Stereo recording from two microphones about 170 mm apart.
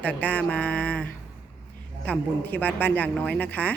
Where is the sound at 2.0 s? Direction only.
10° left (ahead or behind).